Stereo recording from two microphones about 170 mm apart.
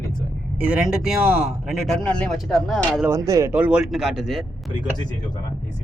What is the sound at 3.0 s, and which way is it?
Speech, 20° right (ahead or behind).